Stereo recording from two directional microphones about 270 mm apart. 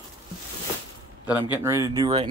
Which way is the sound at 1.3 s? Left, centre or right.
Centre.